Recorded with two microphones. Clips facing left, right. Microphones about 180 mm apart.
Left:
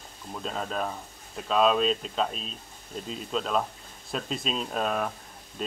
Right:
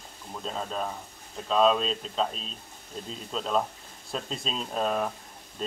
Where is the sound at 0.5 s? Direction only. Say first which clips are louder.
Left 1 dB; 5° left (ahead or behind).